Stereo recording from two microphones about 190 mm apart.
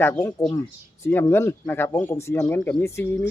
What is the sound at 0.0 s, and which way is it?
Speech, 15° left (ahead or behind).